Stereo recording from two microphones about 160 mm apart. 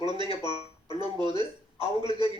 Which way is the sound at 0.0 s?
30° right (ahead or behind).